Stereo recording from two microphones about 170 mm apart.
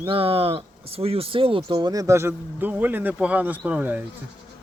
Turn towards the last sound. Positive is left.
turn(degrees=-10)  # may be behind; listen again after turning